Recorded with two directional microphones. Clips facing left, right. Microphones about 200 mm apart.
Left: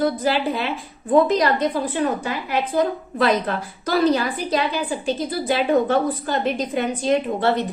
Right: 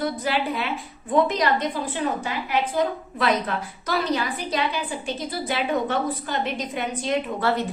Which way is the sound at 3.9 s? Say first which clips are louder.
Left 6 dB; 35° left (ahead or behind).